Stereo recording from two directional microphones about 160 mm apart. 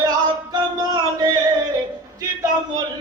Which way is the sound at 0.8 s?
25° right (ahead or behind).